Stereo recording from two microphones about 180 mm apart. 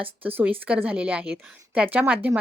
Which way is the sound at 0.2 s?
10° right (ahead or behind).